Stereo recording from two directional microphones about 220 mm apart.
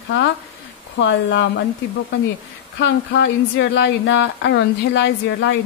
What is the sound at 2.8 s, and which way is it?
Speech, 55° left (ahead or behind).